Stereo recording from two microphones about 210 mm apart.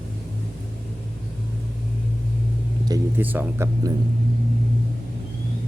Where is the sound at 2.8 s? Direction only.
15° right (ahead or behind).